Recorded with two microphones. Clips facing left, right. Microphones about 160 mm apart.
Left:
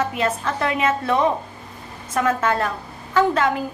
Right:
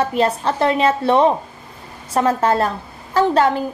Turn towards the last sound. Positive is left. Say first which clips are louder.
# right 3 dB
turn(degrees=-35)  # may be behind; listen again after turning